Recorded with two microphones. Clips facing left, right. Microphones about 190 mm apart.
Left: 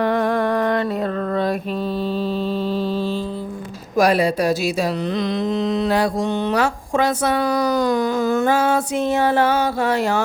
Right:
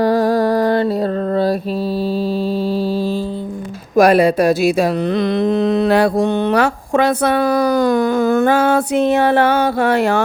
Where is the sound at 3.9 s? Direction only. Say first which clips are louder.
Right 6 dB; 55° right (ahead or behind).